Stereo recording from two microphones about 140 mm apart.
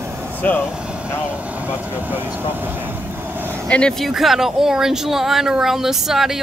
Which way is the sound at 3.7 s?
5° left (ahead or behind).